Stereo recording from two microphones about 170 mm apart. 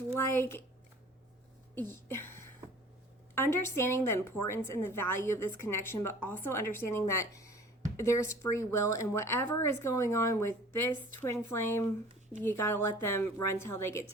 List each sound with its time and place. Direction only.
0.3 s speech: 15° left (ahead or behind)
1.7 s speech: 15° left (ahead or behind)